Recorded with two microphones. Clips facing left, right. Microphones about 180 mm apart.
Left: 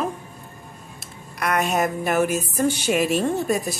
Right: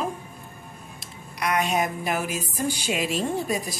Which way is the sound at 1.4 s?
50° left (ahead or behind).